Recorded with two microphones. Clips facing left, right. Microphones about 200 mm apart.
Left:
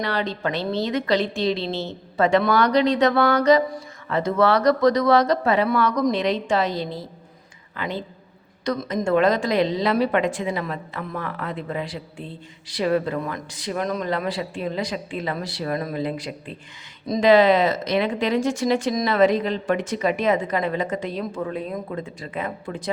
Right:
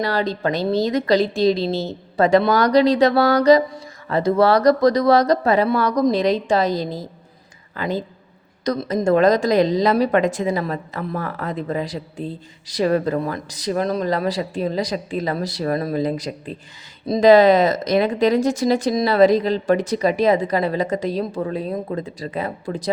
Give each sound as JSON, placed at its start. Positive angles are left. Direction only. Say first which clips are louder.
{"t": 0.0, "sound": "a woman's voice", "louder": "right 4 dB", "side_deg": -40}